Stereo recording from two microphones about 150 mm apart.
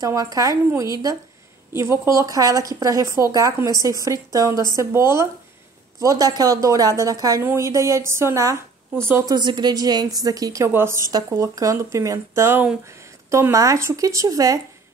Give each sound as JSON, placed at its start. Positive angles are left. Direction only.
{"t": 0.0, "sound": "a woman's voice", "side_deg": -20}